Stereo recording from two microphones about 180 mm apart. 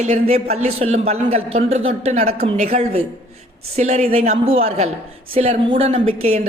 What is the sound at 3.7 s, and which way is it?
Speech, 35° right (ahead or behind).